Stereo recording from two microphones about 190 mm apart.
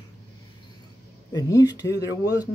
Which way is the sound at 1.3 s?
20° left (ahead or behind).